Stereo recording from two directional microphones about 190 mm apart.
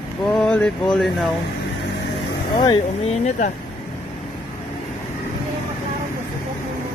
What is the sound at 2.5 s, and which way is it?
Speech, 25° left (ahead or behind).